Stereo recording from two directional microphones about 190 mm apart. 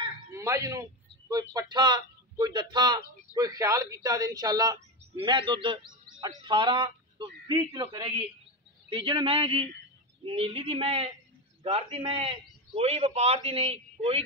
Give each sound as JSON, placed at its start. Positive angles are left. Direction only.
{"t": 0.3, "sound": "a man's voice", "side_deg": -15}